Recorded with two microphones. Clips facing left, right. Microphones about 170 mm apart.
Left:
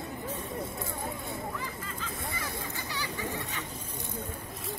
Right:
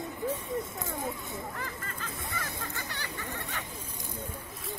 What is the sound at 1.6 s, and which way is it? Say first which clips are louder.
Hubbub: left 1 dB; 55° right (ahead or behind).